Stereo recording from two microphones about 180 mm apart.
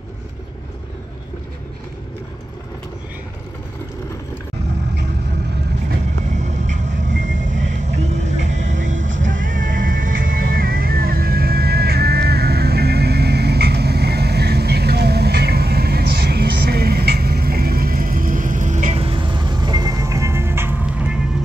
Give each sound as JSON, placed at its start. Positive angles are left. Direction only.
{"t": 6.3, "sound": "vehicle", "side_deg": -40}